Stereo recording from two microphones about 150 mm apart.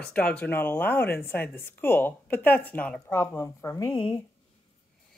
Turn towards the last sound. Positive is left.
turn(degrees=15)  # may be behind; listen again after turning